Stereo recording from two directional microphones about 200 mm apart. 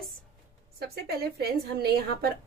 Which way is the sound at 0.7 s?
50° right (ahead or behind).